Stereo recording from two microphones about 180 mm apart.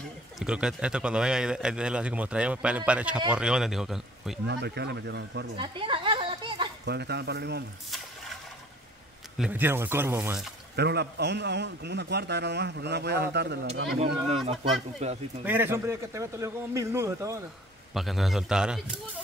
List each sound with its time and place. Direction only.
0.4 s speech: 5° right (ahead or behind)
4.5 s a man's voice: 65° right (ahead or behind)
5.6 s a sound: 30° right (ahead or behind)
6.8 s a man's voice: 70° right (ahead or behind)
9.4 s a man's voice: 10° right (ahead or behind)
10.8 s a man's voice: 65° right (ahead or behind)
13.9 s speech: 35° right (ahead or behind)
15.4 s a man's voice: 10° right (ahead or behind)
17.9 s speech: centre (ahead or behind)